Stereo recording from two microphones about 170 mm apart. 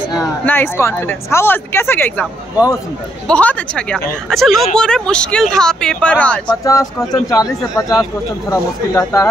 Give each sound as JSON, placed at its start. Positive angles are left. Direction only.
{"t": 0.5, "sound": "speech", "side_deg": 15}
{"t": 3.3, "sound": "speech", "side_deg": 5}
{"t": 6.5, "sound": "speech", "side_deg": 20}